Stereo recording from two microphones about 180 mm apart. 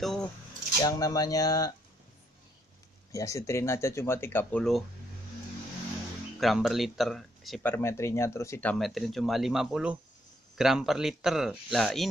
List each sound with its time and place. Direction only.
0.0 s speech: centre (ahead or behind)
0.8 s speech: 20° left (ahead or behind)
3.1 s speech: 15° left (ahead or behind)
6.4 s speech: centre (ahead or behind)
7.7 s speech: 15° left (ahead or behind)